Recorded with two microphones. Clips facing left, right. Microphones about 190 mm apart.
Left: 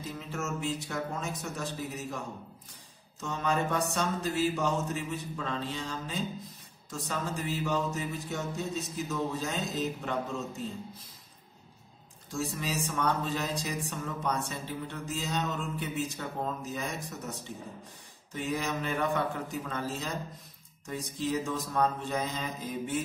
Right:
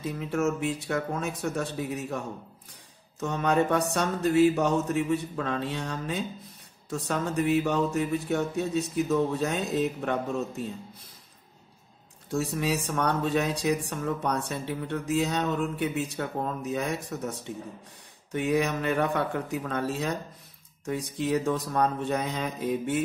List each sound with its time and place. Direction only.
0.0 s speech: 60° right (ahead or behind)
12.3 s speech: 65° right (ahead or behind)